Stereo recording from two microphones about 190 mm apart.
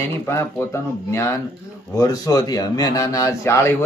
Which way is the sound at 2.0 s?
20° left (ahead or behind).